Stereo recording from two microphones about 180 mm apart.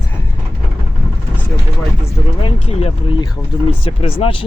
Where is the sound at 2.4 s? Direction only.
30° left (ahead or behind).